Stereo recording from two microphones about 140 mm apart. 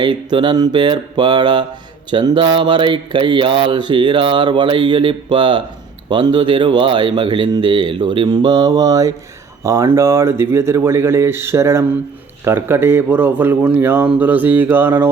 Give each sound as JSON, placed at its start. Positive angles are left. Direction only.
{"t": 0.0, "sound": "mantra", "side_deg": -35}
{"t": 9.6, "sound": "speech", "side_deg": -20}